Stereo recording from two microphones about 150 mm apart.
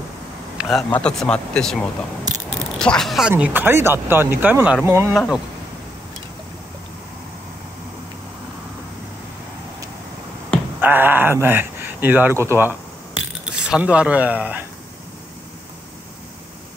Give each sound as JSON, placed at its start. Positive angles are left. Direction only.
{"t": 0.6, "sound": "a man's voice", "side_deg": 0}
{"t": 5.1, "sound": "speech", "side_deg": 0}
{"t": 10.8, "sound": "speech", "side_deg": -15}